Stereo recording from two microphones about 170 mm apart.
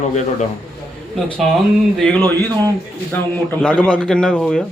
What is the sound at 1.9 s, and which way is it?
A man's voice, 5° left (ahead or behind).